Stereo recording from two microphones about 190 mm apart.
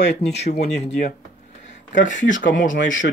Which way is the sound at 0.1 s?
35° left (ahead or behind).